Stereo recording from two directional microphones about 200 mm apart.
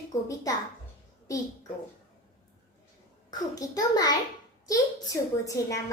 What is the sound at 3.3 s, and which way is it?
Speech, 20° left (ahead or behind).